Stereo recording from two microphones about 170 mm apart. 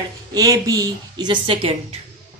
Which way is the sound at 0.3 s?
20° right (ahead or behind).